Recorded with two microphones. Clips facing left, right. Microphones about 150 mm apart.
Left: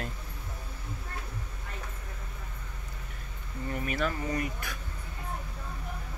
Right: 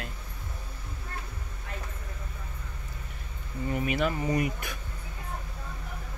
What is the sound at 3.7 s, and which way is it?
Speech, 10° right (ahead or behind).